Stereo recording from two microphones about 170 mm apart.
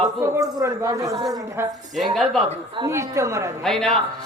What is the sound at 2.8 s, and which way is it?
Speech, 15° right (ahead or behind).